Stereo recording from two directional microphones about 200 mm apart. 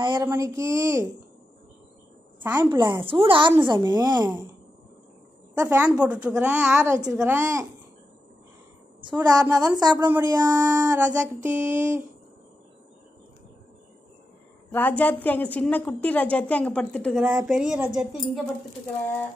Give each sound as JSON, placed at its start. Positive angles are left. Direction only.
{"t": 0.0, "sound": "a woman's voice", "side_deg": -25}
{"t": 2.4, "sound": "a woman's voice", "side_deg": -10}
{"t": 2.7, "sound": "a woman's voice", "side_deg": -25}
{"t": 5.5, "sound": "a woman's voice", "side_deg": -15}
{"t": 9.0, "sound": "a woman's voice", "side_deg": -20}
{"t": 14.7, "sound": "a woman's voice", "side_deg": 10}